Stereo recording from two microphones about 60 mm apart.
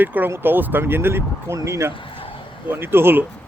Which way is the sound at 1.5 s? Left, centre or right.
Right.